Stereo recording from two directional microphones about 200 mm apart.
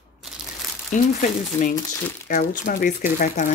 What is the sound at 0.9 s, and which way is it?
Speech, 40° left (ahead or behind).